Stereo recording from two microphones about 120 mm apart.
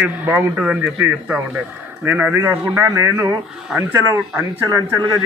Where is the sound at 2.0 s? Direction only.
10° right (ahead or behind).